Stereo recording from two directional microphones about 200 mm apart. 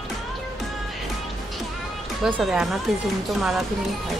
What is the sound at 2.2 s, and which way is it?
Speech, centre (ahead or behind).